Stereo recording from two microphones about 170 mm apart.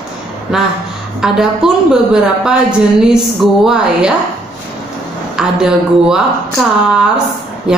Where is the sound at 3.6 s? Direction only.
5° right (ahead or behind).